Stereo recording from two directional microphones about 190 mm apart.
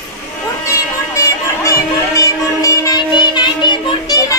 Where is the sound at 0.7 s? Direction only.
15° left (ahead or behind).